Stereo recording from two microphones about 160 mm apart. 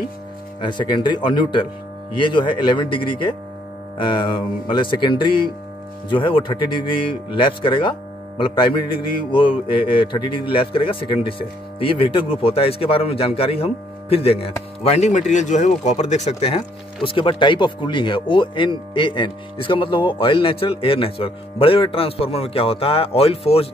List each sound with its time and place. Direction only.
0.6 s a man's voice: 30° left (ahead or behind)